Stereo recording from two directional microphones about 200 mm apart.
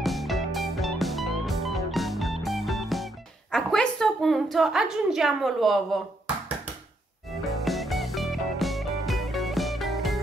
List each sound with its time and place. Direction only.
0.0 s music: centre (ahead or behind)
3.5 s a sound: 5° left (ahead or behind)
7.4 s music: centre (ahead or behind)